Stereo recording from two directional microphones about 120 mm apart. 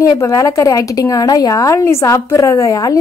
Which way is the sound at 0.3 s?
25° left (ahead or behind).